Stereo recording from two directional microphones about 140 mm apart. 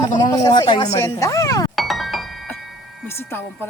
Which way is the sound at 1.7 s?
Centre (ahead or behind).